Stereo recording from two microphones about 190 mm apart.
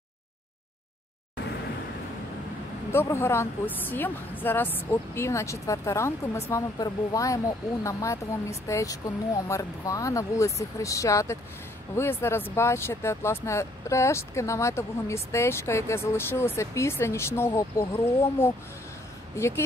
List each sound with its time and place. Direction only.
2.9 s speech: 15° left (ahead or behind)